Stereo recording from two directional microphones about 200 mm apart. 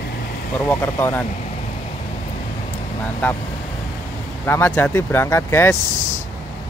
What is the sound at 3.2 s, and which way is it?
Speech, 10° left (ahead or behind).